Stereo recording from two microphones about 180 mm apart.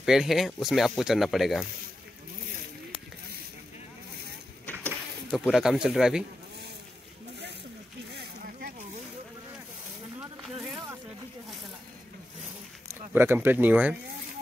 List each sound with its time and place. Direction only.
0.0 s speech: 5° right (ahead or behind)
5.4 s speech: 5° right (ahead or behind)
8.1 s a sound: 60° right (ahead or behind)
13.1 s speech: 10° right (ahead or behind)